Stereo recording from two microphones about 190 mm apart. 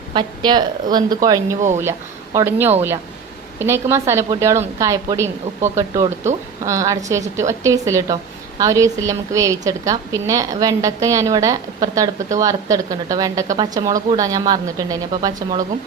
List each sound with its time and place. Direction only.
0.1 s a woman's voice: 25° right (ahead or behind)